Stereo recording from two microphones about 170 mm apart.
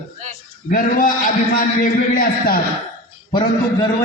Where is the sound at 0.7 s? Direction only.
50° left (ahead or behind).